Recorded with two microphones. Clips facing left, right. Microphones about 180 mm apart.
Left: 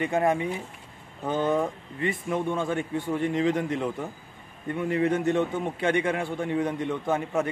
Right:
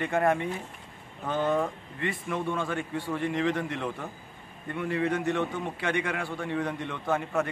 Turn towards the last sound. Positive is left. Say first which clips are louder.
# left 2 dB
turn(degrees=20)  # may be behind; listen again after turning